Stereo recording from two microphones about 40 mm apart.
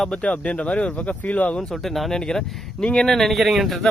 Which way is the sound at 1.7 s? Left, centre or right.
Centre.